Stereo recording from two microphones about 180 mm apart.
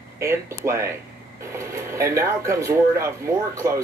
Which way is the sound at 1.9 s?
15° right (ahead or behind).